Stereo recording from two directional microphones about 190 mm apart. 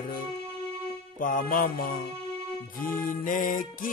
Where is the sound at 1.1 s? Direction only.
45° left (ahead or behind).